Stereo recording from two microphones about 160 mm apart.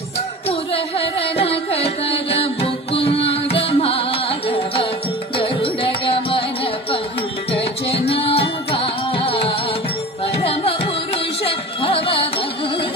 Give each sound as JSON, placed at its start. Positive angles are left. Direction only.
{"t": 0.5, "sound": "carnatic music", "side_deg": 35}
{"t": 5.4, "sound": "music", "side_deg": 35}